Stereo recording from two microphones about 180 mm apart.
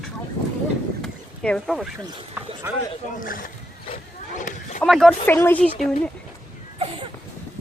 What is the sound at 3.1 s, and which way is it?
Speech, 50° left (ahead or behind).